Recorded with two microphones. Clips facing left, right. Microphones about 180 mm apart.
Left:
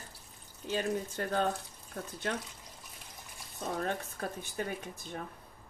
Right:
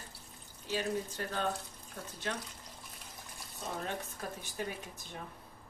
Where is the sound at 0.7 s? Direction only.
50° left (ahead or behind).